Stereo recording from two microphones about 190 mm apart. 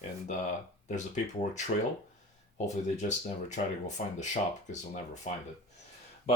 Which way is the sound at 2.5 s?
35° left (ahead or behind).